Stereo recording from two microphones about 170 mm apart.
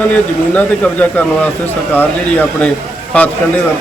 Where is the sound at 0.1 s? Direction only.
10° left (ahead or behind).